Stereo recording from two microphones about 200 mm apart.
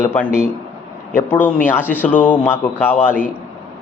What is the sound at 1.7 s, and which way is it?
Speech, 10° left (ahead or behind).